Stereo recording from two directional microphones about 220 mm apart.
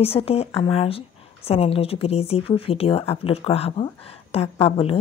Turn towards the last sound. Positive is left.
turn(degrees=25)  # may be behind; listen again after turning